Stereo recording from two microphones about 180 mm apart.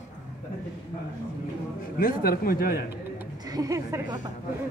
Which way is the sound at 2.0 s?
50° left (ahead or behind).